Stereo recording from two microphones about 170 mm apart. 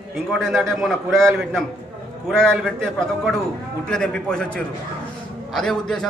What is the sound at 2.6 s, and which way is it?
A man's voice, centre (ahead or behind).